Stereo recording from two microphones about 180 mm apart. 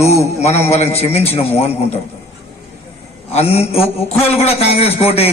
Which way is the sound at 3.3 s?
35° left (ahead or behind).